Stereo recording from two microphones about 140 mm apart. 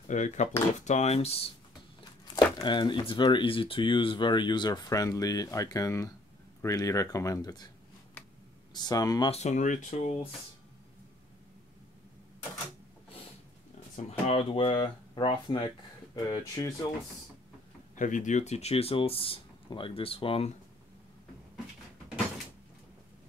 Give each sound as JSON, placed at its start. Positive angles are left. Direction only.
{"t": 0.1, "sound": "speech", "side_deg": 60}
{"t": 2.3, "sound": "speech", "side_deg": 35}
{"t": 8.7, "sound": "speech", "side_deg": 30}
{"t": 9.3, "sound": "speech", "side_deg": 55}
{"t": 13.9, "sound": "speech", "side_deg": 50}
{"t": 17.9, "sound": "speech", "side_deg": 65}